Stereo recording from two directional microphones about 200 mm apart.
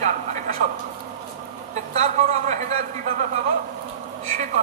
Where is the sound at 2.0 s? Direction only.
35° right (ahead or behind).